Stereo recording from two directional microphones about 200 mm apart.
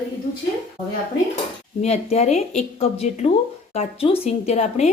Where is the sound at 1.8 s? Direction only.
30° left (ahead or behind).